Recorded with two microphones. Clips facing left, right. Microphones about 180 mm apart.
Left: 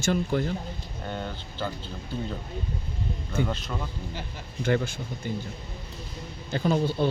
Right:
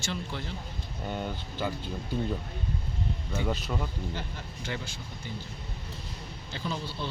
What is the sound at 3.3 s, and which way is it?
Speech, 5° right (ahead or behind).